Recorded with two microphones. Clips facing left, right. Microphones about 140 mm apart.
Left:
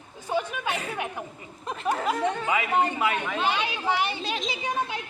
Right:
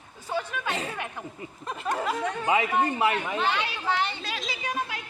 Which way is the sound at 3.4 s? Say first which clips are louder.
Left 1 dB; 15° left (ahead or behind).